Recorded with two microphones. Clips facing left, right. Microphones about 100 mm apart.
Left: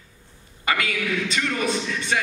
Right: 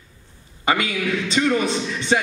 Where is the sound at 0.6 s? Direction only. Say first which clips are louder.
Right 3 dB; 25° right (ahead or behind).